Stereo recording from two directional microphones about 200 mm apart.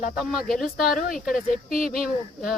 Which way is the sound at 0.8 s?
45° left (ahead or behind).